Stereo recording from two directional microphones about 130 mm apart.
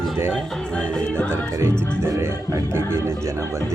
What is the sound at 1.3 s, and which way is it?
Music, 20° right (ahead or behind).